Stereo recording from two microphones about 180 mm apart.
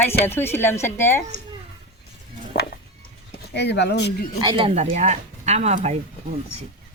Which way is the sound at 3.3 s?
70° left (ahead or behind).